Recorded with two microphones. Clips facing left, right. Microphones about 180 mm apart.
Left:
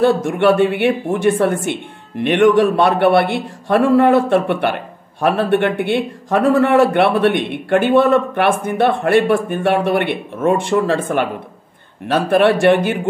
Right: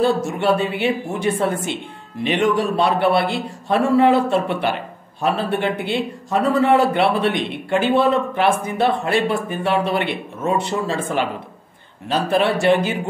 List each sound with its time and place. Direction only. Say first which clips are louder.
0.4 s a man's voice: left 6 dB; 75° left (ahead or behind)
3.9 s a man's voice: left 2 dB; 55° left (ahead or behind)